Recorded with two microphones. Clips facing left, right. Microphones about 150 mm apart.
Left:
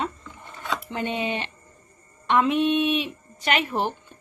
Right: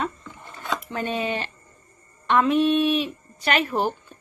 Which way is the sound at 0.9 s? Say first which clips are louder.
Right 1 dB; 20° left (ahead or behind).